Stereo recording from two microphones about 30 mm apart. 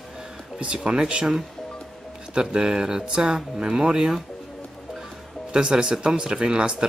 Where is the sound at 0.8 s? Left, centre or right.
Right.